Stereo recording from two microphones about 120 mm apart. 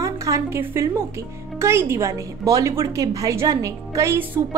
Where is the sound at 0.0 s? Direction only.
25° right (ahead or behind).